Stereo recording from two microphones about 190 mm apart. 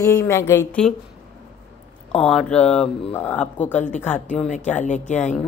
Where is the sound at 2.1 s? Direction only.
5° left (ahead or behind).